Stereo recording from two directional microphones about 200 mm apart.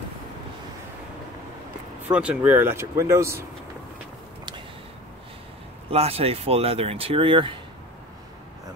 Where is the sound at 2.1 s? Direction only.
5° right (ahead or behind).